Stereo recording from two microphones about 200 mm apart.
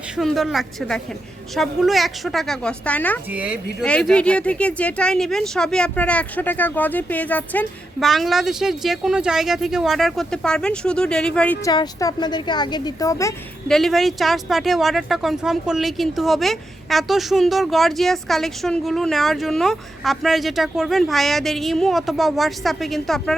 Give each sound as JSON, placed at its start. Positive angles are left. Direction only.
{"t": 0.2, "sound": "speech", "side_deg": 0}
{"t": 3.3, "sound": "speech", "side_deg": -5}
{"t": 3.8, "sound": "speech", "side_deg": 5}
{"t": 11.6, "sound": "a woman's voice", "side_deg": 20}
{"t": 13.7, "sound": "speech", "side_deg": 0}